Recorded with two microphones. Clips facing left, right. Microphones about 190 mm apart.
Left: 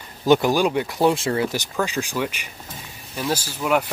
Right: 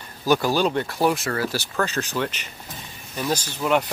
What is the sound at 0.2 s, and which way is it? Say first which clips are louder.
Speech: left 3 dB; 20° left (ahead or behind).